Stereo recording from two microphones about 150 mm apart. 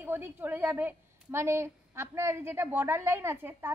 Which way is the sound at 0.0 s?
15° right (ahead or behind).